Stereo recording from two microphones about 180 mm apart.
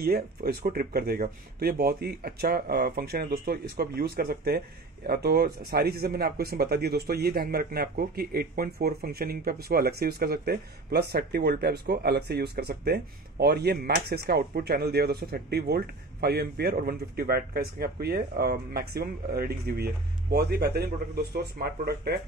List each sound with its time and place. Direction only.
0.0 s speech: 60° right (ahead or behind)